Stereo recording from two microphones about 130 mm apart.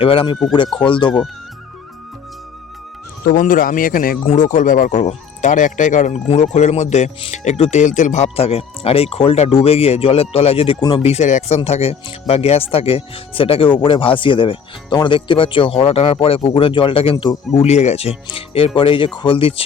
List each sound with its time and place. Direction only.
0.0 s speech: 45° left (ahead or behind)
3.2 s speech: 90° left
4.3 s speech: 80° left; by 10.8 s 50° left (ahead or behind)
10.8 s speech: 35° left (ahead or behind)
11.0 s speech: 60° left (ahead or behind)